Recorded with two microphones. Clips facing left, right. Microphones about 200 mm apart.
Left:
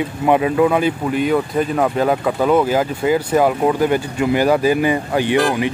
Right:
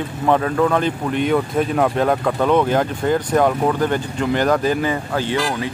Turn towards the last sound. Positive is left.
turn(degrees=15)  # may be behind; listen again after turning